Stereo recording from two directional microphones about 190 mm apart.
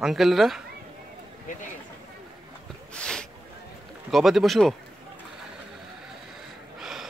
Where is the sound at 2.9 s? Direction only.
5° left (ahead or behind).